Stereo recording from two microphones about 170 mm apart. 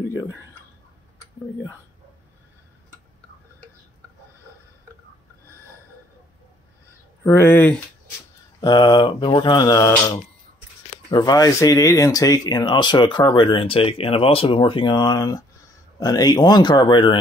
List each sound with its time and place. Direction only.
0.1 s speech: 20° left (ahead or behind)
7.2 s speech: 15° left (ahead or behind)
8.5 s speech: 25° left (ahead or behind)